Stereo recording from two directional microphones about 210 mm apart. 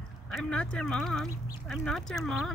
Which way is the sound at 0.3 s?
5° left (ahead or behind).